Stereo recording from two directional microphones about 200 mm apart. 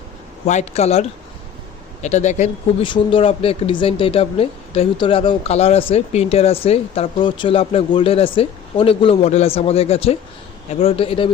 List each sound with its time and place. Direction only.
0.4 s a man's voice: 35° left (ahead or behind)
2.8 s speech: 25° left (ahead or behind)